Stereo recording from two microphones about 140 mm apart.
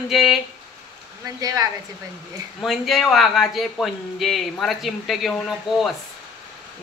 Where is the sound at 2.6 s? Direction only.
Centre (ahead or behind).